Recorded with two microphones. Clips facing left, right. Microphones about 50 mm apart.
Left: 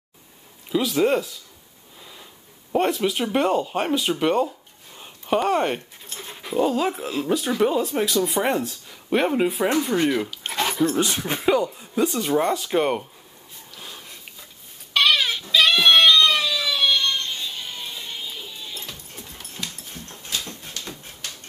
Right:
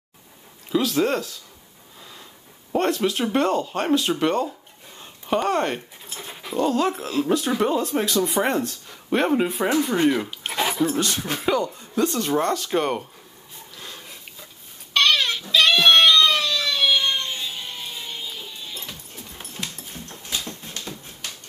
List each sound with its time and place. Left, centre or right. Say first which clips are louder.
0.7 s speech: left 1 dB; centre
2.0 s a sound: even; centre
2.7 s speech: even; centre
4.9 s a sound: left 1 dB; centre
6.0 s dog: even; centre
6.5 s speech: even; centre
10.5 s dog: even; centre
11.0 s speech: left 1 dB; centre
13.7 s dog: even; centre
15.0 s goat: even; centre
15.5 s cat: even; centre
17.0 s music: even; centre
19.6 s dog: right 1 dB; centre
20.1 s dog: even; right